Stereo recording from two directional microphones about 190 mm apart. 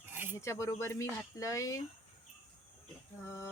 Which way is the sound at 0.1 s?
10° right (ahead or behind).